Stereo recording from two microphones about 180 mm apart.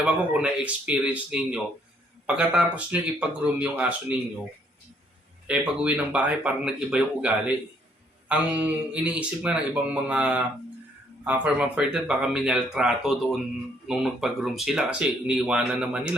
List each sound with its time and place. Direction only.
0.0 s speech: 5° right (ahead or behind)
5.5 s speech: 5° right (ahead or behind)